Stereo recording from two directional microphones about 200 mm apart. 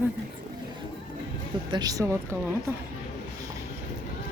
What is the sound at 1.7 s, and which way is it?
Speech, 20° right (ahead or behind).